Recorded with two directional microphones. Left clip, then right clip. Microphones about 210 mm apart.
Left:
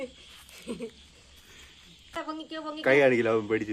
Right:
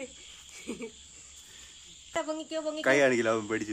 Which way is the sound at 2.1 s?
40° right (ahead or behind).